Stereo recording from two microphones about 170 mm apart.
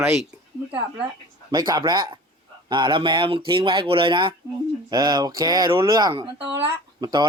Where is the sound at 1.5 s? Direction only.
25° right (ahead or behind).